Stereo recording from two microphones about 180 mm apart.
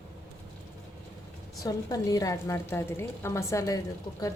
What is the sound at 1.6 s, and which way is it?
A woman's voice, 20° left (ahead or behind).